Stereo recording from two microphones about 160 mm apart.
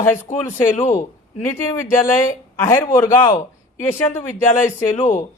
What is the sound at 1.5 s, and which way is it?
A man's voice, 15° left (ahead or behind).